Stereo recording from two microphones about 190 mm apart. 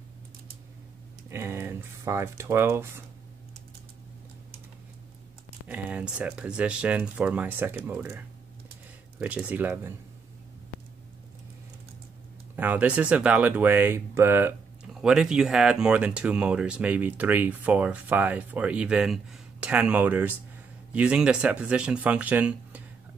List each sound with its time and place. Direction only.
1.3 s speech: 15° right (ahead or behind)
5.7 s speech: 5° right (ahead or behind)
9.2 s speech: 5° right (ahead or behind)
12.5 s speech: 10° right (ahead or behind)